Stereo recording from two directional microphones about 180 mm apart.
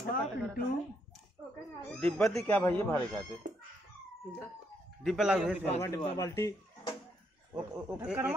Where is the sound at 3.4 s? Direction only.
45° right (ahead or behind).